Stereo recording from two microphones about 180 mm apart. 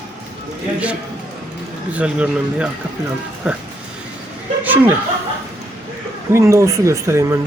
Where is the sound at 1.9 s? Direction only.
5° right (ahead or behind).